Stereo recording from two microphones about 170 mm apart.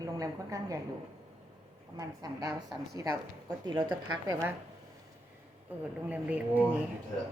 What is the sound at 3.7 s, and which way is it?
Speech, 30° right (ahead or behind).